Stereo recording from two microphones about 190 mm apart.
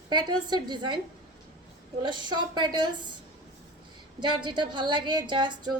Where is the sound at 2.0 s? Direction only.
25° right (ahead or behind).